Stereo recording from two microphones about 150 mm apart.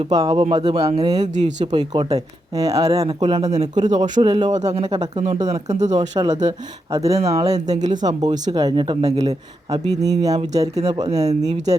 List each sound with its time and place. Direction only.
0.2 s speech: 35° right (ahead or behind)
1.4 s speech: 50° right (ahead or behind)
1.7 s speech: 30° right (ahead or behind)
3.2 s speech: 35° right (ahead or behind)
3.4 s speech: 50° right (ahead or behind)
4.2 s speech: 30° right (ahead or behind)
4.4 s speech: 50° right (ahead or behind)
6.0 s speech: 25° right (ahead or behind)
11.3 s speech: 50° right (ahead or behind)